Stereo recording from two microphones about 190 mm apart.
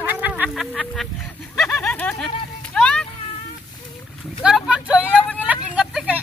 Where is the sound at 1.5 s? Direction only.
5° left (ahead or behind).